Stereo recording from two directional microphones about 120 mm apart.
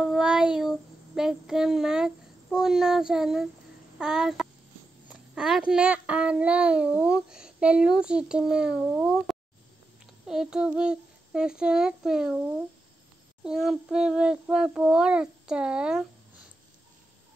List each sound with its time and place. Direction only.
0.0 s child singing: 5° right (ahead or behind)
4.0 s a child's voice: 5° right (ahead or behind)